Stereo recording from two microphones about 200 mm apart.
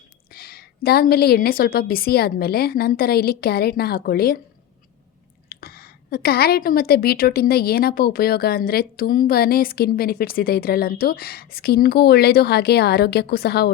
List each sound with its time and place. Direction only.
0.3 s a woman's voice: 50° left (ahead or behind)
5.5 s a woman's voice: 50° left (ahead or behind)